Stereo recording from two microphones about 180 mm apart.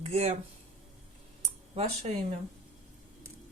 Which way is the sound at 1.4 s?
35° right (ahead or behind).